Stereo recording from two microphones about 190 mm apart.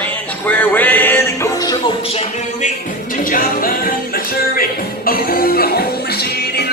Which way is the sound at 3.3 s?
45° left (ahead or behind).